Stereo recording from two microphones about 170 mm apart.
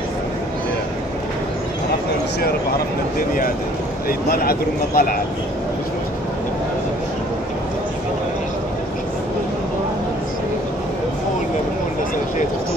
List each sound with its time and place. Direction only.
3.2 s speech: 55° left (ahead or behind)